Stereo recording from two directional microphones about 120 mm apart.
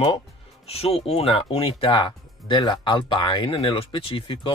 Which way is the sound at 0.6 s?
55° left (ahead or behind).